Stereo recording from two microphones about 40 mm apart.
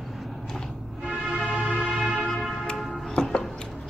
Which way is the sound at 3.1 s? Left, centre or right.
Centre.